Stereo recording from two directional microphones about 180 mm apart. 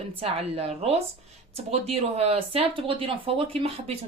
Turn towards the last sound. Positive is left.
turn(degrees=-30)  # may be behind; listen again after turning